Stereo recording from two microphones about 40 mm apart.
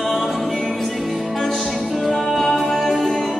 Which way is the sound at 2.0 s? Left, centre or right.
Centre.